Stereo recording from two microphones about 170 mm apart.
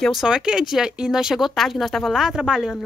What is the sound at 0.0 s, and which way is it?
Speech, centre (ahead or behind).